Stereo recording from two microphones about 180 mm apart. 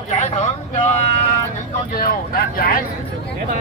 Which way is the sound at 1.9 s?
55° left (ahead or behind).